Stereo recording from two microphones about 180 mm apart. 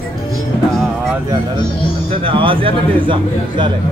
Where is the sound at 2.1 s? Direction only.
30° right (ahead or behind).